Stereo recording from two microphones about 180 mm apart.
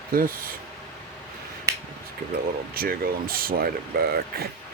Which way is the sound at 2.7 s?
55° right (ahead or behind).